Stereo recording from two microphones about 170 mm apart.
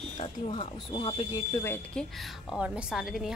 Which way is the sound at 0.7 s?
25° left (ahead or behind).